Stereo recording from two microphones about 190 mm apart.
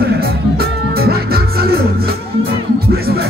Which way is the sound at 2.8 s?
55° right (ahead or behind).